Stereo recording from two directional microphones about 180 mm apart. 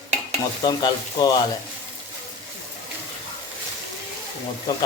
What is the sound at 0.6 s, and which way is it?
Speech, 25° left (ahead or behind).